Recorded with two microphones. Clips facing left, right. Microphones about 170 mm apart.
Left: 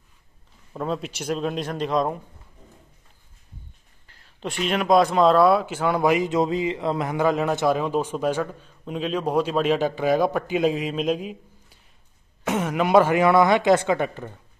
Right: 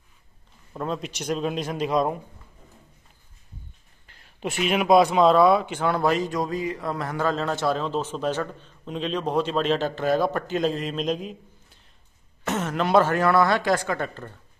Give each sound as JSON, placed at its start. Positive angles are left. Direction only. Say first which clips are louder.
{"t": 0.7, "sound": "speech", "louder": "left 2 dB", "side_deg": 0}
{"t": 4.2, "sound": "speech", "louder": "right 1 dB", "side_deg": -10}